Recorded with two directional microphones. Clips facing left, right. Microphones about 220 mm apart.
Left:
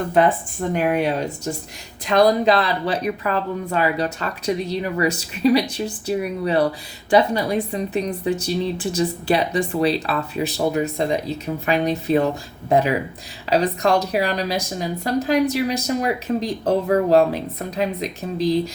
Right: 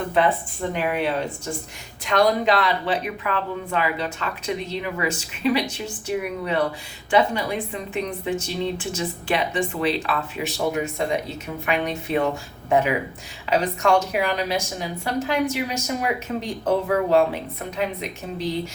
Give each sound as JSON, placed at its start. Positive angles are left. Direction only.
{"t": 0.1, "sound": "speech", "side_deg": 45}